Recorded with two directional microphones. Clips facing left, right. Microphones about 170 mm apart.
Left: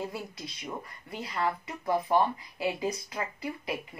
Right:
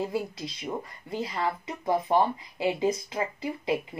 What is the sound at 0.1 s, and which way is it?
Speech, 25° right (ahead or behind).